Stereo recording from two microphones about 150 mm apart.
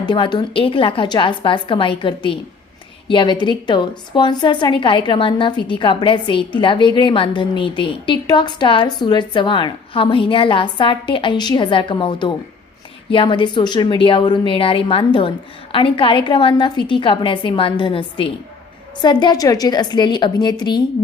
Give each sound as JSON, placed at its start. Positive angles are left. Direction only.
{"t": 0.0, "sound": "a woman's voice", "side_deg": 30}